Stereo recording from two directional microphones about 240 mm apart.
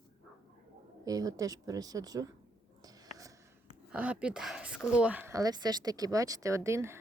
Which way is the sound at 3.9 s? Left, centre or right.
Centre.